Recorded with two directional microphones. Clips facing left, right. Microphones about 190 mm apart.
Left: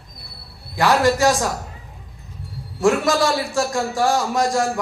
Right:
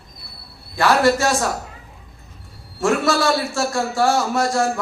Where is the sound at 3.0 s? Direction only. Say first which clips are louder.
Even; 15° left (ahead or behind).